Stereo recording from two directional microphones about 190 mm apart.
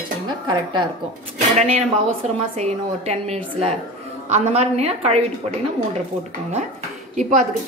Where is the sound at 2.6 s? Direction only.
35° right (ahead or behind).